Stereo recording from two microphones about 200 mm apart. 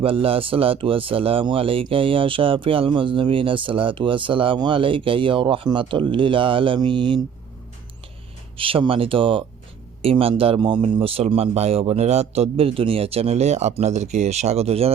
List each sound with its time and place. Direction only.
0.0 s speech: 30° right (ahead or behind)
8.5 s speech: 25° right (ahead or behind)